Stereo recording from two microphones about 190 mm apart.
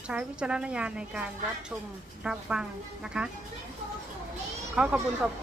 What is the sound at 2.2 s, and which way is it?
A woman's voice, 5° right (ahead or behind).